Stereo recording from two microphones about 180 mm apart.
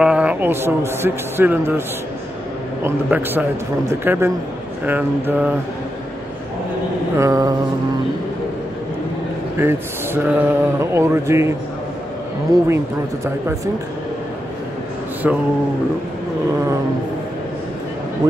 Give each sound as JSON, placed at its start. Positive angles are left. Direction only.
{"t": 0.0, "sound": "speech", "side_deg": -5}
{"t": 2.8, "sound": "speech", "side_deg": -10}
{"t": 7.2, "sound": "mantra", "side_deg": -20}
{"t": 9.6, "sound": "speech", "side_deg": -10}
{"t": 12.6, "sound": "speech", "side_deg": -15}
{"t": 15.2, "sound": "speech", "side_deg": -10}